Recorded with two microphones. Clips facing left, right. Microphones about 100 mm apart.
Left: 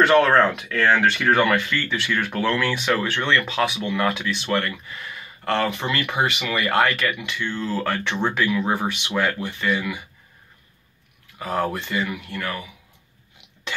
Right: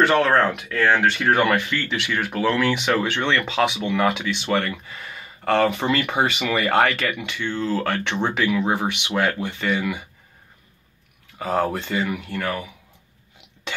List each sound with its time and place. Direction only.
0.1 s speech: 10° right (ahead or behind); by 10.0 s 30° right (ahead or behind)
11.4 s speech: 25° right (ahead or behind)